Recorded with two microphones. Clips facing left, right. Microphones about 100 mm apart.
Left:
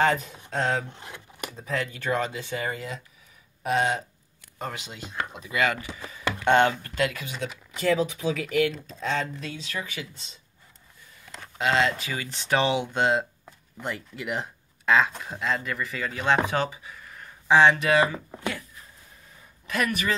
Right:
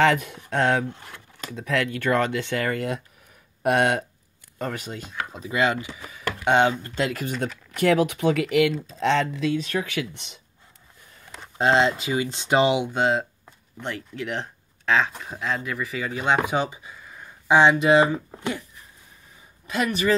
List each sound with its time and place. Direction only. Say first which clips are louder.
0.0 s speech: right 3 dB; 75° right (ahead or behind)
0.9 s a sound: left 1 dB; 20° left (ahead or behind)
1.5 s speech: right 6 dB; 75° right (ahead or behind)
4.7 s speech: right 6 dB; 45° right (ahead or behind)
5.3 s speech: right 3 dB; 30° right (ahead or behind)
5.9 s typing: left 1 dB; 5° right (ahead or behind)
6.4 s speech: right 1 dB; 15° right (ahead or behind)
7.0 s speech: left 1 dB; 35° right (ahead or behind)
7.2 s speech: right 5 dB; 50° right (ahead or behind); by 10.4 s 70° right (ahead or behind)
11.5 s speech: right 4 dB; 30° right (ahead or behind)
16.9 s a sound: right 1 dB; 10° right (ahead or behind)
17.5 s speech: right 2 dB; 20° right (ahead or behind)
19.7 s speech: right 4 dB; 25° right (ahead or behind)